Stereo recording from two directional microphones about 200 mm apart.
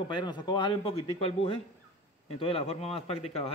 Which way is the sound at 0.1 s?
20° left (ahead or behind).